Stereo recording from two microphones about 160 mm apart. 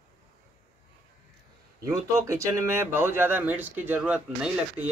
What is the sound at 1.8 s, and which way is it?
Speech, 20° right (ahead or behind).